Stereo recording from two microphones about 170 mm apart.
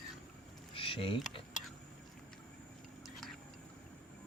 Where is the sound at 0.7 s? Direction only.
30° left (ahead or behind).